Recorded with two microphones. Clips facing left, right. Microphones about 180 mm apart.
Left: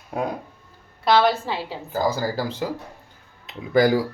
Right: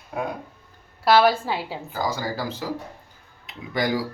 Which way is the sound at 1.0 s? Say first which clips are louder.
Right 1 dB; 5° right (ahead or behind).